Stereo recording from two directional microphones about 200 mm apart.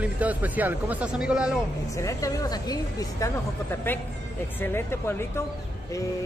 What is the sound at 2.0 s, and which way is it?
A woman's voice, 15° left (ahead or behind).